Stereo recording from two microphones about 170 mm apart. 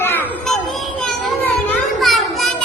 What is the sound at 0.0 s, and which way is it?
Children playing, 15° left (ahead or behind).